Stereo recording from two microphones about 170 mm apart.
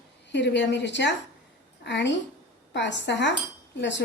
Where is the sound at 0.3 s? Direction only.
90° left.